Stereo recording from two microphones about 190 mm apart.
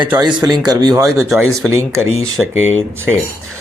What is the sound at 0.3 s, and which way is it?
Speech, 20° right (ahead or behind).